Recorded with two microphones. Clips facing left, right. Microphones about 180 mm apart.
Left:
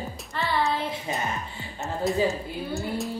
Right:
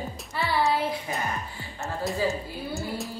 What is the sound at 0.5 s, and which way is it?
Speech, 10° right (ahead or behind).